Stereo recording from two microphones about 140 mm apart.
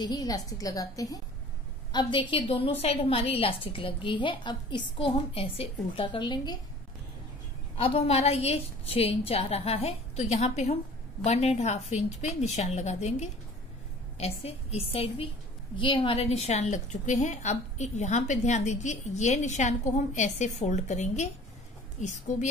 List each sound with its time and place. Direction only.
0.0 s a woman's voice: 30° left (ahead or behind)
7.7 s a woman's voice: 45° left (ahead or behind)